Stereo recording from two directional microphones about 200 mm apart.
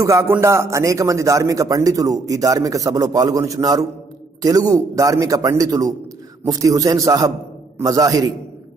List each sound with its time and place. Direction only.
0.0 s a man's voice: 15° right (ahead or behind)